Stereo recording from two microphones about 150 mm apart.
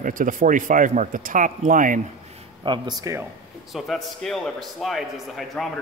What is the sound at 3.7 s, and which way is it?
A man's voice, centre (ahead or behind).